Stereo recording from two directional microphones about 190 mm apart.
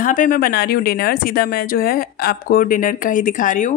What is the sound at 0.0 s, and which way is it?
A woman's voice, 45° left (ahead or behind).